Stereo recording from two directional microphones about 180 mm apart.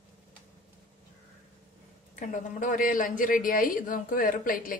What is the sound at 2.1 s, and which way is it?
A woman's voice, 45° left (ahead or behind).